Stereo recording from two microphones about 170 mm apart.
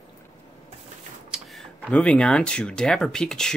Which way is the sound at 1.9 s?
10° left (ahead or behind).